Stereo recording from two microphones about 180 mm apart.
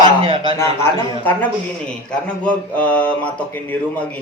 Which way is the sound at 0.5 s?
10° left (ahead or behind).